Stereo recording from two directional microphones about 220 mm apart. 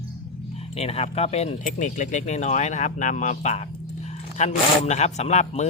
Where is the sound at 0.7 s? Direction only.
25° left (ahead or behind).